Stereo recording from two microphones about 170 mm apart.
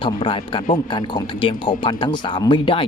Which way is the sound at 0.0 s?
30° left (ahead or behind).